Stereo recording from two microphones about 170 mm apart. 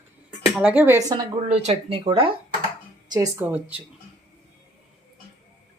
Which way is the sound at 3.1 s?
15° right (ahead or behind).